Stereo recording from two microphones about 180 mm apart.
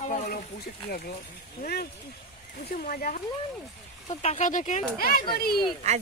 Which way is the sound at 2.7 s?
50° left (ahead or behind).